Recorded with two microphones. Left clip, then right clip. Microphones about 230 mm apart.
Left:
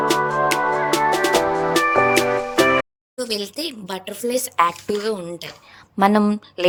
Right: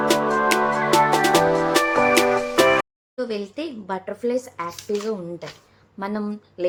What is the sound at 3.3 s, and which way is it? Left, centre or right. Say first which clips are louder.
Speech: left 3 dB; left.